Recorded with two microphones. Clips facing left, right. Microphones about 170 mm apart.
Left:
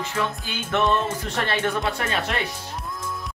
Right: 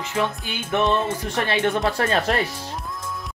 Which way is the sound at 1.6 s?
40° right (ahead or behind).